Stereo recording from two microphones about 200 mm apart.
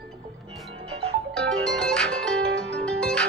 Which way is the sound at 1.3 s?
5° left (ahead or behind).